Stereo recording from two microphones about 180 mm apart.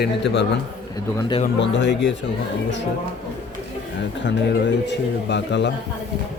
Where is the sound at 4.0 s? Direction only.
80° left.